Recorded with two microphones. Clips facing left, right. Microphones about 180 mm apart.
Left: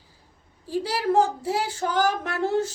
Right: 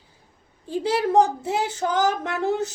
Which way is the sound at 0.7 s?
20° right (ahead or behind).